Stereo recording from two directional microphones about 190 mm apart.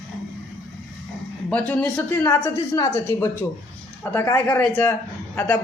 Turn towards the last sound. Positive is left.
turn(degrees=10)  # may be behind; listen again after turning